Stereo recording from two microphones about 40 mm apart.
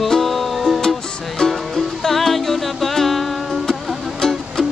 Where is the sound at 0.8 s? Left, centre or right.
Centre.